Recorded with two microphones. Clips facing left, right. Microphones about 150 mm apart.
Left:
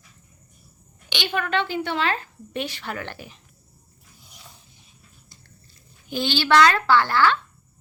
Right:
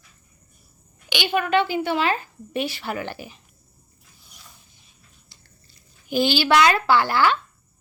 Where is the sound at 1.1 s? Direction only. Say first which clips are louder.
Right 4 dB; 10° right (ahead or behind).